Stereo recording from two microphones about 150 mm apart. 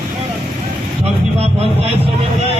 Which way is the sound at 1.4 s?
40° right (ahead or behind).